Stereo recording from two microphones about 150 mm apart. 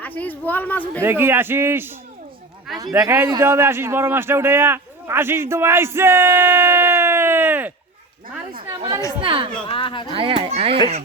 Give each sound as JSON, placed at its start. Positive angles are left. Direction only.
{"t": 0.0, "sound": "speech", "side_deg": 10}
{"t": 1.0, "sound": "a man's voice", "side_deg": -15}
{"t": 9.2, "sound": "a child's voice", "side_deg": -35}
{"t": 9.6, "sound": "speech", "side_deg": 35}
{"t": 10.1, "sound": "a child's voice", "side_deg": -35}